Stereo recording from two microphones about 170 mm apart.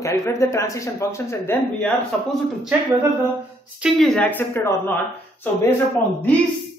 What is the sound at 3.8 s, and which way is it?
A man's voice, centre (ahead or behind).